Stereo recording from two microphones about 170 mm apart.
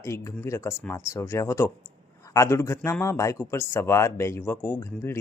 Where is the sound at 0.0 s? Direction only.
15° left (ahead or behind).